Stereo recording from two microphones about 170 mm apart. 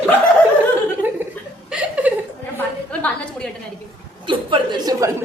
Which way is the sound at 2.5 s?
10° left (ahead or behind).